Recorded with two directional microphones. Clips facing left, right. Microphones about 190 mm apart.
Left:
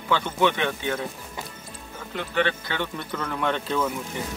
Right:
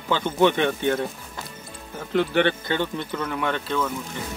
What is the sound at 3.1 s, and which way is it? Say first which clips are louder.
Speech: left 3 dB; 5° right (ahead or behind).